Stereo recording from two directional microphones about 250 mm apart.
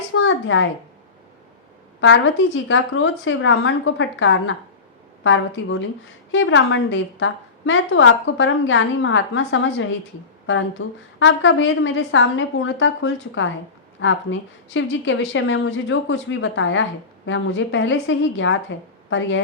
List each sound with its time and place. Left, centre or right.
0.1 s a woman's voice: left
2.0 s a woman's voice: left